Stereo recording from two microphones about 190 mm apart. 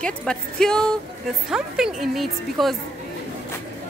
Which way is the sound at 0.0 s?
5° left (ahead or behind).